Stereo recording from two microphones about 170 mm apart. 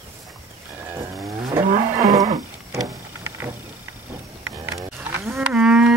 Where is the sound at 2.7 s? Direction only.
20° right (ahead or behind).